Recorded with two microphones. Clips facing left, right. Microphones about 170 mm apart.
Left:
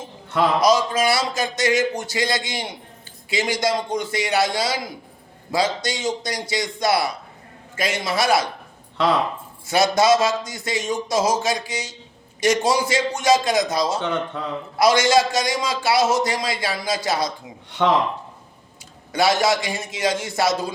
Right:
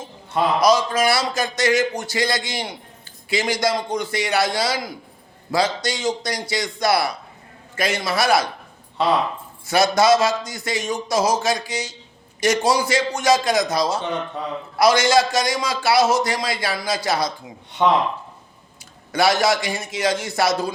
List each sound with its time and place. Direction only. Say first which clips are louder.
0.3 s a man's voice: left 1 dB; 80° left
0.6 s a man's voice: right 3 dB; 20° left (ahead or behind)
9.6 s a man's voice: right 1 dB; 20° left (ahead or behind)
17.8 s speech: right 1 dB; 75° left (ahead or behind)
19.1 s a man's voice: right 1 dB; 20° left (ahead or behind)